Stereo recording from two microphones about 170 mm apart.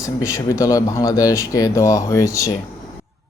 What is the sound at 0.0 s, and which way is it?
Speech, 15° left (ahead or behind).